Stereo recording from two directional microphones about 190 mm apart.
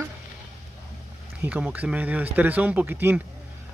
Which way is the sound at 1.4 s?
5° right (ahead or behind).